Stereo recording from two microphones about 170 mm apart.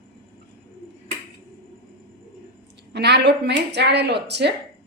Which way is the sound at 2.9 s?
80° right.